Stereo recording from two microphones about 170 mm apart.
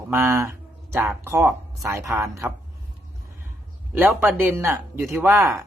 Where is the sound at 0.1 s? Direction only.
15° right (ahead or behind).